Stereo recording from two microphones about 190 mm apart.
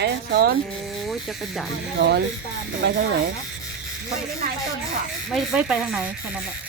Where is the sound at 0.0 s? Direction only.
55° right (ahead or behind).